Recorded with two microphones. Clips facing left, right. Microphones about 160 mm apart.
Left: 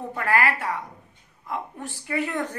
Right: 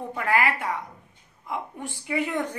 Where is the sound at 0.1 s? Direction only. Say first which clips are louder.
Left 1 dB; 15° right (ahead or behind).